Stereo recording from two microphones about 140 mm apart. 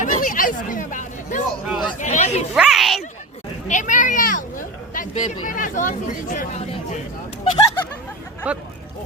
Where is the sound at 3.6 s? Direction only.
60° left (ahead or behind).